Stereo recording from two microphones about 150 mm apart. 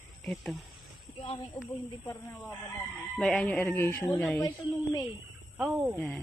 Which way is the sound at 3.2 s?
10° left (ahead or behind).